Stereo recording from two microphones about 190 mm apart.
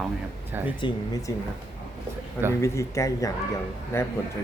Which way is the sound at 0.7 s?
20° left (ahead or behind).